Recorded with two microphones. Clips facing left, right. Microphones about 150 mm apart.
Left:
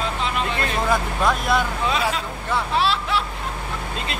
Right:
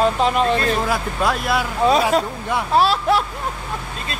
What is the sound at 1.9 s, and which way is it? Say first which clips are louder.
Speech: right 7 dB; 40° right (ahead or behind).